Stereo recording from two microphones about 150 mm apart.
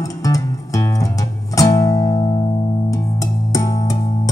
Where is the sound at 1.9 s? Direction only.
35° left (ahead or behind).